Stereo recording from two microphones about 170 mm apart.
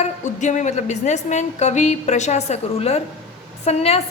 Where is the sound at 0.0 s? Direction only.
45° left (ahead or behind).